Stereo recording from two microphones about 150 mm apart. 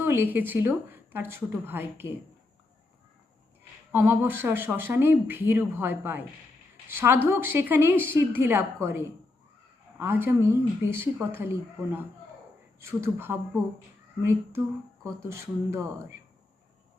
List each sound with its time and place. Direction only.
0.0 s speech: 15° right (ahead or behind)
3.9 s speech: 15° right (ahead or behind)